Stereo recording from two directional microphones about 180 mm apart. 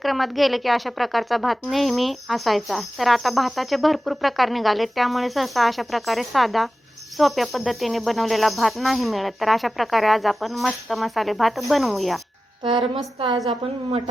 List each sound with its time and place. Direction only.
0.0 s speech: centre (ahead or behind)
12.6 s a woman's voice: 30° right (ahead or behind)